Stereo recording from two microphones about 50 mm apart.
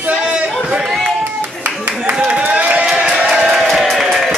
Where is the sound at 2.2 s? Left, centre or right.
Right.